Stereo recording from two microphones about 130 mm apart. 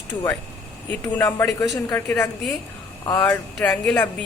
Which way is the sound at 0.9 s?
15° left (ahead or behind).